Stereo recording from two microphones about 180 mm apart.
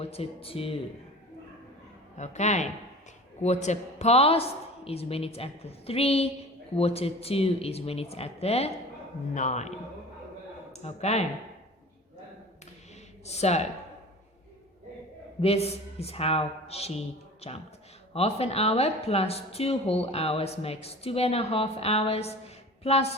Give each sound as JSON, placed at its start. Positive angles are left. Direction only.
{"t": 0.0, "sound": "a woman's voice", "side_deg": 35}
{"t": 2.1, "sound": "a woman's voice", "side_deg": 40}
{"t": 13.2, "sound": "a woman's voice", "side_deg": 35}
{"t": 15.4, "sound": "a woman's voice", "side_deg": 35}